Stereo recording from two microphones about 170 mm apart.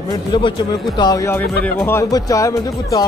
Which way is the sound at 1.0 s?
20° left (ahead or behind).